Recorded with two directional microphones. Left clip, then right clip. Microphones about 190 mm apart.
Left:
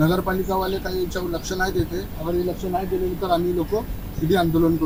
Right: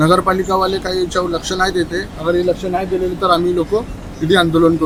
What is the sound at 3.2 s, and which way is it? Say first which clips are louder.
Speech: right 9 dB; 30° right (ahead or behind).